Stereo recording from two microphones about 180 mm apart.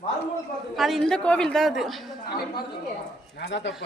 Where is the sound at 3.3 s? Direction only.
75° left (ahead or behind).